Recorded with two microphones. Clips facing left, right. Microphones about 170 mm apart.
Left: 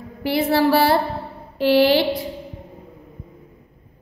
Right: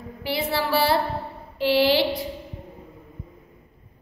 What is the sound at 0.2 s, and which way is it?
A woman's voice, 50° left (ahead or behind).